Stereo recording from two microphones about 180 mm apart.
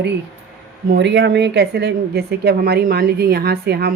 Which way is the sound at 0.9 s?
75° right (ahead or behind).